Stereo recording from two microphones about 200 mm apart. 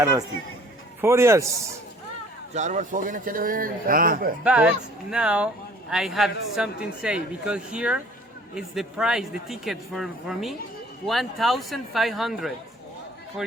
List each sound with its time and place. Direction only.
1.0 s speech: 15° right (ahead or behind)
2.6 s speech: 35° right (ahead or behind)
4.4 s speech: 5° right (ahead or behind)